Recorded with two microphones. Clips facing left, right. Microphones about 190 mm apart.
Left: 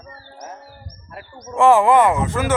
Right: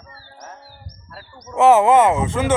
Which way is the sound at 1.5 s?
20° right (ahead or behind).